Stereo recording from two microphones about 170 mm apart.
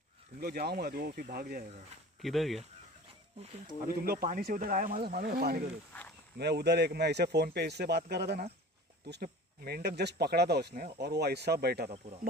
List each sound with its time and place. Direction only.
0.4 s speech: 65° right (ahead or behind)
2.2 s speech: centre (ahead or behind)
3.8 s speech: 60° right (ahead or behind)
6.3 s speech: 75° right (ahead or behind)